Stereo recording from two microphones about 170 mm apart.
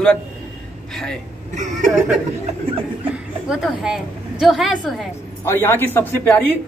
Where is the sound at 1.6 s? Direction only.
45° right (ahead or behind).